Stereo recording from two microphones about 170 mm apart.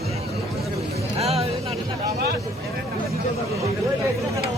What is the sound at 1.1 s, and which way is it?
Music, 35° right (ahead or behind).